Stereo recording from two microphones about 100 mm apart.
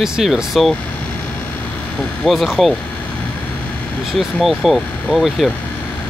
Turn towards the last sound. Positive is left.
turn(degrees=0)  # may be behind; listen again after turning